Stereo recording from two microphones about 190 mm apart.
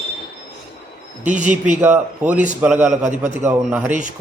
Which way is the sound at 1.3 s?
40° right (ahead or behind).